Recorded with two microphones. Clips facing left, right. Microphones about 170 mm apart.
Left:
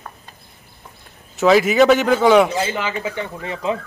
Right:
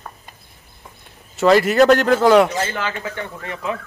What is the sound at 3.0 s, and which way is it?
Speech, 20° left (ahead or behind).